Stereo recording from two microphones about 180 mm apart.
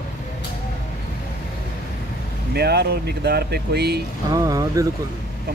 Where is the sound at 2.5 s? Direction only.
65° right (ahead or behind).